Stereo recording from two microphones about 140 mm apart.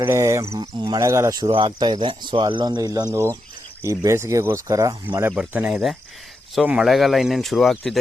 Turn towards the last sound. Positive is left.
turn(degrees=0)  # may be behind; listen again after turning